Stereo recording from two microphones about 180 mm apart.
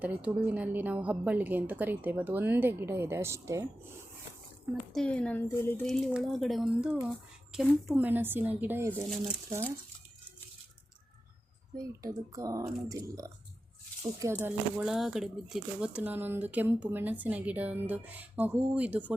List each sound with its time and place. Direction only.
0.0 s speech: 10° right (ahead or behind)
4.9 s speech: 5° left (ahead or behind)
11.8 s speech: 20° right (ahead or behind)
14.4 s speech: 5° right (ahead or behind)